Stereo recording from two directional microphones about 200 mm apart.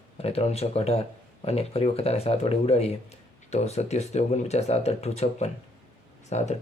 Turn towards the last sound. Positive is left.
turn(degrees=35)  # may be behind; listen again after turning